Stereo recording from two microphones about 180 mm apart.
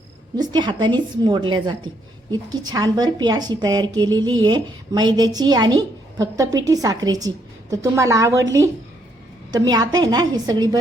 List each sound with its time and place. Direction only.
0.3 s a woman's voice: 25° right (ahead or behind)
9.5 s a woman's voice: 20° right (ahead or behind)